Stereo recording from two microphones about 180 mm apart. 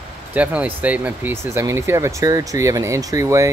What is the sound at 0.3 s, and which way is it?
Speech, 5° right (ahead or behind).